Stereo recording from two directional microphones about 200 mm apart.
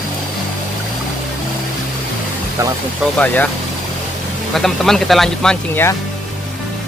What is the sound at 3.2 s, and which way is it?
Speech, 10° left (ahead or behind).